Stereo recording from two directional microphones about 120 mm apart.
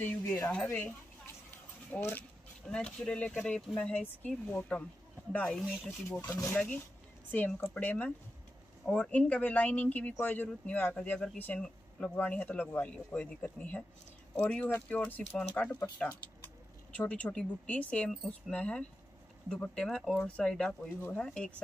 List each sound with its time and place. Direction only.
0.0 s a woman's voice: 10° left (ahead or behind)
2.6 s speech: 5° left (ahead or behind)
6.3 s speech: 20° left (ahead or behind)
15.0 s speech: 10° left (ahead or behind)